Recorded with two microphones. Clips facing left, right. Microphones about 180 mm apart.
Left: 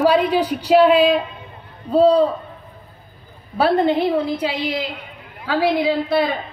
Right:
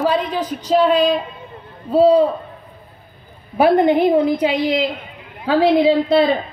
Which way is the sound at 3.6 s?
15° right (ahead or behind).